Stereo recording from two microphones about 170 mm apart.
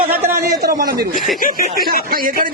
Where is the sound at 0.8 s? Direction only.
60° right (ahead or behind).